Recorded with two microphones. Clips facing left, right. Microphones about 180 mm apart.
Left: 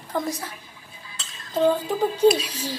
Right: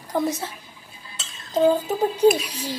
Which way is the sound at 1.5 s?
10° right (ahead or behind).